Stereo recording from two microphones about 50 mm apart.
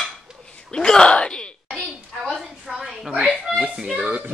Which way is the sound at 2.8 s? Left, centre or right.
Centre.